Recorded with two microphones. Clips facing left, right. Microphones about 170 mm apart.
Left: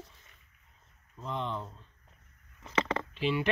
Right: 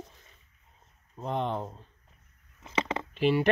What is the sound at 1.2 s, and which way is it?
Speech, 55° right (ahead or behind).